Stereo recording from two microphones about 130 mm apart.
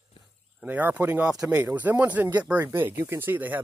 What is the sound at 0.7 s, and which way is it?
Speech, 15° right (ahead or behind).